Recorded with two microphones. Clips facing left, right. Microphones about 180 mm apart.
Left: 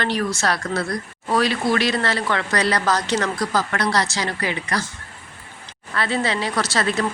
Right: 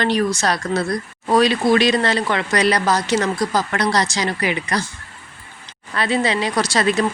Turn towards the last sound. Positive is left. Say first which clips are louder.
# right 4 dB
turn(degrees=-15)  # may be behind; listen again after turning